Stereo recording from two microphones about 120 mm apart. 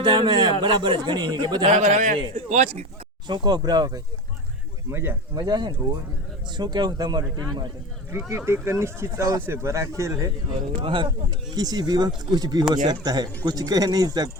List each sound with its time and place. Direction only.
0.0 s a man's voice: 40° right (ahead or behind)
1.6 s a man's voice: 90° right
2.3 s a man's voice: 70° right (ahead or behind)
3.2 s a man's voice: 35° right (ahead or behind)
4.9 s speech: 20° right (ahead or behind)
5.3 s a man's voice: 35° right (ahead or behind)
8.1 s speech: 20° right (ahead or behind)
10.8 s a man's voice: 40° right (ahead or behind)